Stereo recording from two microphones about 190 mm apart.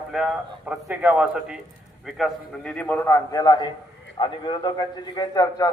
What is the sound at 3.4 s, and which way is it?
A man's voice, 20° left (ahead or behind).